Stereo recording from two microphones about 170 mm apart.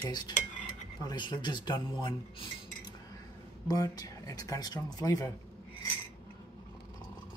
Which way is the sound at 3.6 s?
20° left (ahead or behind).